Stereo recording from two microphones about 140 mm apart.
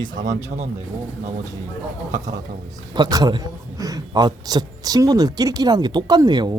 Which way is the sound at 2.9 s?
30° right (ahead or behind).